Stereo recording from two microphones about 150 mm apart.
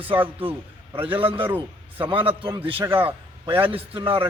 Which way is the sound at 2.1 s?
35° right (ahead or behind).